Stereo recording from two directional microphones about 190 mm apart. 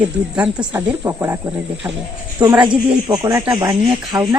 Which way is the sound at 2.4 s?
20° right (ahead or behind).